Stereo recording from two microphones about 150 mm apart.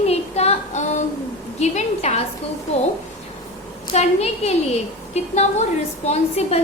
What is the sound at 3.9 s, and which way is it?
A woman's voice, 45° left (ahead or behind).